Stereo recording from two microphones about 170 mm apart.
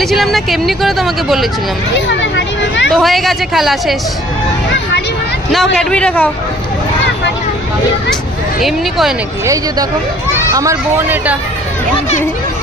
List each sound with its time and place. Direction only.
0.0 s speech: centre (ahead or behind)
2.0 s a sound: 90° left
2.9 s speech: centre (ahead or behind)
5.7 s speech: 5° left (ahead or behind)
8.6 s speech: centre (ahead or behind)
10.5 s speech: 20° right (ahead or behind)